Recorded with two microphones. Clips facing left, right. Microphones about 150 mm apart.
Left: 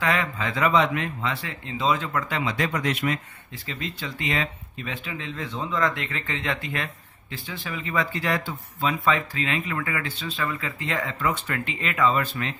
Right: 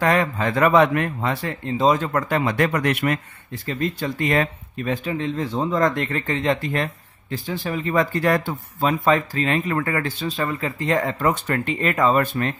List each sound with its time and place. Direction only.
0.0 s speech: 45° right (ahead or behind); by 3.2 s 60° right (ahead or behind)
3.6 s speech: 50° right (ahead or behind)